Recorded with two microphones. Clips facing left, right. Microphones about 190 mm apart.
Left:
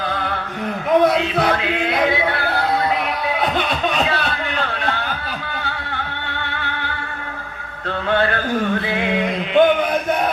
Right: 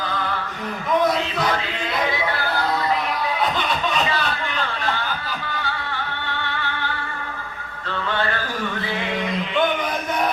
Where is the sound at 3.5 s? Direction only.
60° left (ahead or behind).